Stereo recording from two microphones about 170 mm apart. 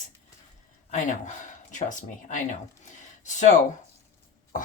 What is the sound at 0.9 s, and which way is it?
Speech, 45° left (ahead or behind).